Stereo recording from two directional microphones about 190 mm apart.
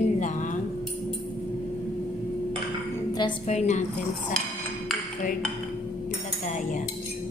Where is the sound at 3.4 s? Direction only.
35° left (ahead or behind).